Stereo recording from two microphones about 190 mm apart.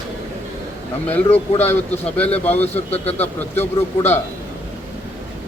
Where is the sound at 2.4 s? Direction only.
10° left (ahead or behind).